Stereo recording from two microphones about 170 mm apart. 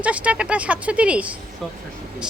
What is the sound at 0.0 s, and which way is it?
A woman's voice, 5° right (ahead or behind).